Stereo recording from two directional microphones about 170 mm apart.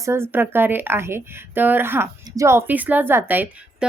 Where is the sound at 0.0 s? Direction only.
15° right (ahead or behind).